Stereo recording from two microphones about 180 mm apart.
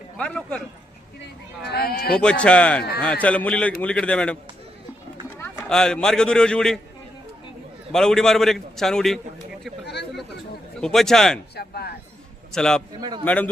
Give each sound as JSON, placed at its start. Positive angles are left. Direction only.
{"t": 0.2, "sound": "a man's voice", "side_deg": 5}
{"t": 1.6, "sound": "speech", "side_deg": 60}
{"t": 2.1, "sound": "a man's voice", "side_deg": 5}
{"t": 5.4, "sound": "a man's voice", "side_deg": 10}
{"t": 7.9, "sound": "a man's voice", "side_deg": 5}
{"t": 9.8, "sound": "speech", "side_deg": 70}
{"t": 10.8, "sound": "a man's voice", "side_deg": 5}
{"t": 11.5, "sound": "speech", "side_deg": 60}
{"t": 12.5, "sound": "a man's voice", "side_deg": 5}
{"t": 13.0, "sound": "a man's voice", "side_deg": -25}
{"t": 13.2, "sound": "a man's voice", "side_deg": 10}